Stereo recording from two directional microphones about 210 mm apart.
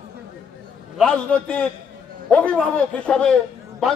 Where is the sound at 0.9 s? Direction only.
5° left (ahead or behind).